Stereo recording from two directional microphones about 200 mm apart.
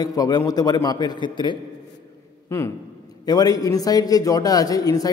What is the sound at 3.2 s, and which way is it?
A man's voice, 20° left (ahead or behind).